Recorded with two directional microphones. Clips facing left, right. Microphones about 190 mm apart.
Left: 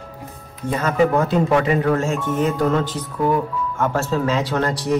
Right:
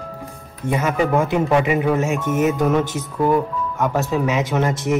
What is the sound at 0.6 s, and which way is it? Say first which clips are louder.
Speech: left 1 dB; 20° right (ahead or behind).